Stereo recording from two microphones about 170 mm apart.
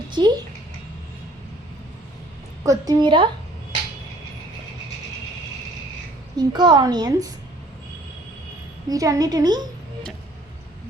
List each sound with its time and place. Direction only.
0.1 s a sound: 25° right (ahead or behind)
2.6 s a woman's voice: 25° right (ahead or behind)
6.3 s a woman's voice: 25° right (ahead or behind)
8.9 s a woman's voice: 20° right (ahead or behind)